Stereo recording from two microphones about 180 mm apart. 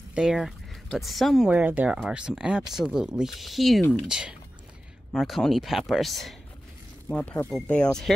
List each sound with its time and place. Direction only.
0.1 s speech: centre (ahead or behind)